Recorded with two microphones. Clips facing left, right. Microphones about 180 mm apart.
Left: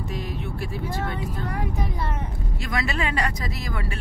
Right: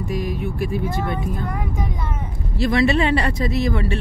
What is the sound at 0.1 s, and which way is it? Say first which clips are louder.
Speech: right 9 dB; 10° right (ahead or behind).